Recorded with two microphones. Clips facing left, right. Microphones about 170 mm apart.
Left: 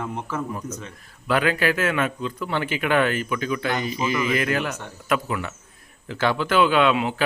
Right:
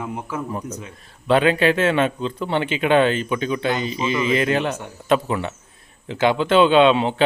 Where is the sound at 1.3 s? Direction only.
25° right (ahead or behind).